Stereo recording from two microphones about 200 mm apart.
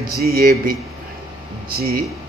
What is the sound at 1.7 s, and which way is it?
Speech, 50° right (ahead or behind).